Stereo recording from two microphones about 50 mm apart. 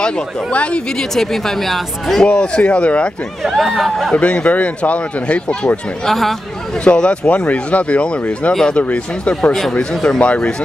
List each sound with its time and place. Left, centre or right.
0.0 s speech: left
1.1 s speech: centre
2.2 s speech: centre
3.4 s speech: centre
4.1 s speech: left
6.0 s speech: centre
6.8 s speech: left
9.3 s speech: centre
10.2 s speech: left